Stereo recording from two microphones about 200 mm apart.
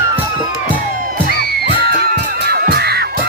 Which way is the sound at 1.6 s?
55° right (ahead or behind).